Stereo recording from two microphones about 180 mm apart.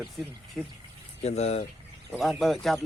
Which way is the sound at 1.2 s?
35° left (ahead or behind).